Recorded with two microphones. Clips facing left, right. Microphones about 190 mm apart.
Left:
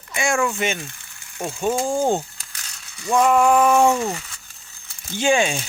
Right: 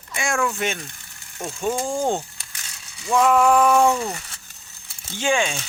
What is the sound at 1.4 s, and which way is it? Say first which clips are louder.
Speech: left 3 dB; 15° left (ahead or behind).